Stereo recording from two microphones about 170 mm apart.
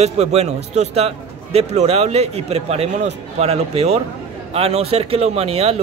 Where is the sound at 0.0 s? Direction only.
40° right (ahead or behind).